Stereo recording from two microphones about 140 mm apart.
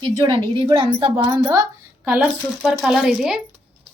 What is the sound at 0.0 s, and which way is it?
A woman's voice, 35° right (ahead or behind).